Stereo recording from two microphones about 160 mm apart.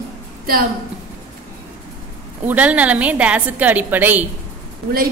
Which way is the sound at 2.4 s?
10° right (ahead or behind).